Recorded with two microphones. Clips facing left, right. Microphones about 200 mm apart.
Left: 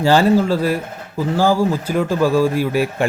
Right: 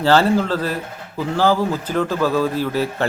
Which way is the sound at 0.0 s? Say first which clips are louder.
Left 2 dB; 15° left (ahead or behind).